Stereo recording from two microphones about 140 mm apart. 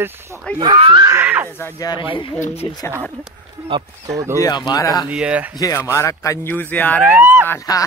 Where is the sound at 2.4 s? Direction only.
50° left (ahead or behind).